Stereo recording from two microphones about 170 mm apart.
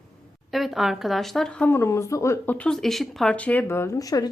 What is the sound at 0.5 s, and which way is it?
Speech, centre (ahead or behind).